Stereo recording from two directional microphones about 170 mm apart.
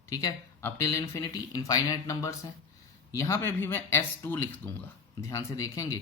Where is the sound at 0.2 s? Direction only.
20° left (ahead or behind).